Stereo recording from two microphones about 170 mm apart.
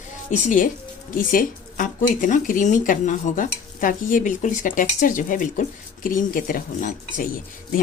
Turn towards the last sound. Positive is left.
turn(degrees=55)  # may be behind; listen again after turning